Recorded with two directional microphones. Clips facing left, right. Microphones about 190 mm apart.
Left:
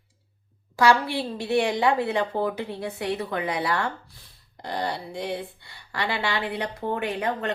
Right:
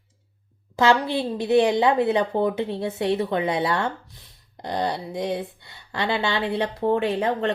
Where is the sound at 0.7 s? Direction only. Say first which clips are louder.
Right 1 dB; 20° right (ahead or behind).